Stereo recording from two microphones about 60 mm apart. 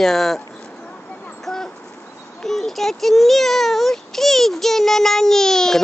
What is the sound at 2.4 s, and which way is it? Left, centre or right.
Speech, centre.